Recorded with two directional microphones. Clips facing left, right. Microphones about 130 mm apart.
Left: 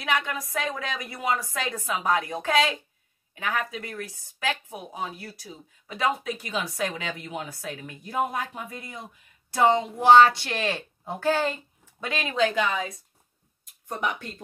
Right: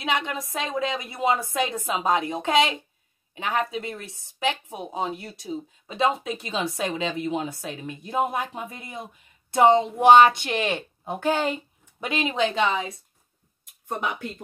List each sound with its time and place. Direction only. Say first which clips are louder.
0.0 s speech: right 1 dB; 20° right (ahead or behind)